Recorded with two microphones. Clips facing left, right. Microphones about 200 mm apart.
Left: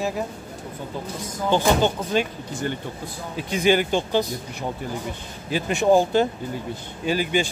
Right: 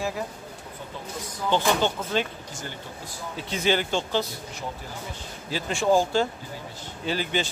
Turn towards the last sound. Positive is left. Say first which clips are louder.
# left 5 dB
turn(degrees=15)  # may be behind; listen again after turning